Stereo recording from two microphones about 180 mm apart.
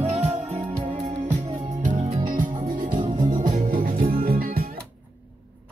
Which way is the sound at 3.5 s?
50° right (ahead or behind).